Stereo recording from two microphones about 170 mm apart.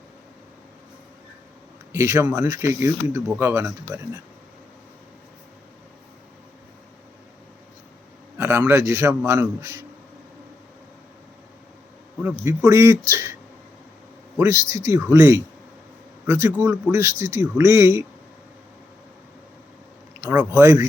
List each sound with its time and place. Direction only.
1.9 s speech: 15° right (ahead or behind)
8.4 s speech: 15° right (ahead or behind)
12.2 s speech: 15° right (ahead or behind)
14.3 s speech: 15° right (ahead or behind)
20.2 s speech: 15° right (ahead or behind)